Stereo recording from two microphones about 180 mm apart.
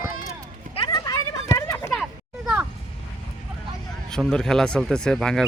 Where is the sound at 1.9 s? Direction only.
5° right (ahead or behind).